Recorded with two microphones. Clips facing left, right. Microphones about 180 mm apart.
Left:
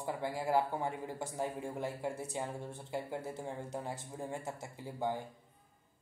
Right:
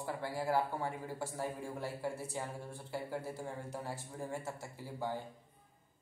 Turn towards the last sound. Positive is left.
turn(degrees=20)  # may be behind; listen again after turning